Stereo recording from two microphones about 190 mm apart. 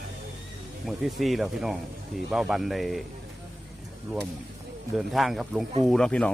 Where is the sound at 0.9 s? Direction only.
Centre (ahead or behind).